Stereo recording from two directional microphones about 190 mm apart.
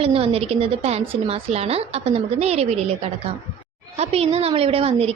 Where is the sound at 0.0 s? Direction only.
30° right (ahead or behind).